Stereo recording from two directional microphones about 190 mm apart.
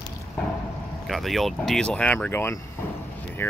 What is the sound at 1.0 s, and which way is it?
Speech, centre (ahead or behind).